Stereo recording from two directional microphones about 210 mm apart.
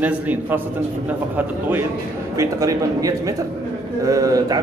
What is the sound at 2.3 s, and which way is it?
A man's voice, 15° right (ahead or behind).